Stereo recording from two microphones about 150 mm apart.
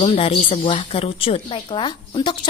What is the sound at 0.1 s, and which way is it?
A woman's voice, 35° left (ahead or behind).